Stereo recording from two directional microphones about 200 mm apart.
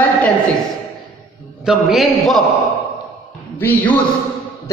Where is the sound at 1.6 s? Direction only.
Centre (ahead or behind).